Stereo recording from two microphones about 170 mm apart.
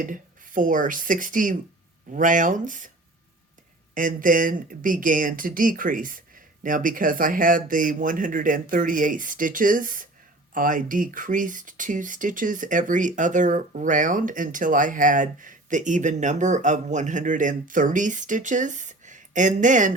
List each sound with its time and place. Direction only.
0.0 s speech: 50° right (ahead or behind)
3.9 s speech: 50° right (ahead or behind)